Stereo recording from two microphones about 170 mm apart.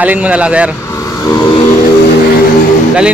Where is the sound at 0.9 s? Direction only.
20° left (ahead or behind).